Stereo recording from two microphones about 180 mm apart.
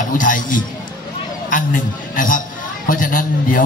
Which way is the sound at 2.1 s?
50° left (ahead or behind).